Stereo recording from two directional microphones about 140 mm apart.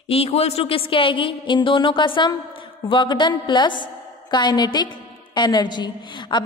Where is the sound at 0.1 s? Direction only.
45° left (ahead or behind).